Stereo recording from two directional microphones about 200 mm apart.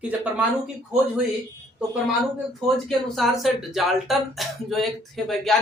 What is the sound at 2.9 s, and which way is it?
Speech, centre (ahead or behind).